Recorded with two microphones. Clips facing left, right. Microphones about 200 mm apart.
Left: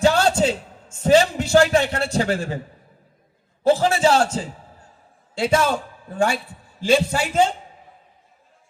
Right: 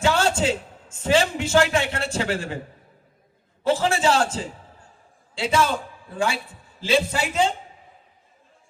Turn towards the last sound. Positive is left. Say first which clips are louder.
# left 3 dB
turn(degrees=45)  # may be behind; listen again after turning